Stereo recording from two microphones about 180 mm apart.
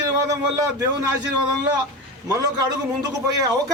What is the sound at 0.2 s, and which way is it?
Speech, 20° right (ahead or behind).